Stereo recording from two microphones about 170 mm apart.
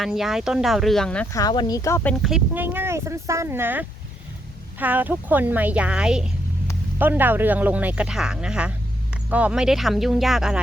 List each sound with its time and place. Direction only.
0.0 s speech: centre (ahead or behind)
1.3 s speech: 20° left (ahead or behind)
2.2 s speech: 5° right (ahead or behind)